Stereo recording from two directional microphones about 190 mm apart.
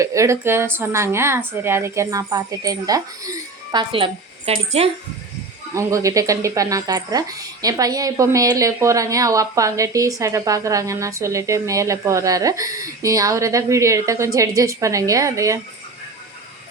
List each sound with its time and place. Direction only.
0.0 s speech: 15° right (ahead or behind); by 4.9 s 30° right (ahead or behind)
5.7 s speech: 15° right (ahead or behind)